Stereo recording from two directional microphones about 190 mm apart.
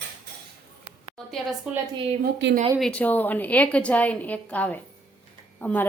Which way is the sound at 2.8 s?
10° left (ahead or behind).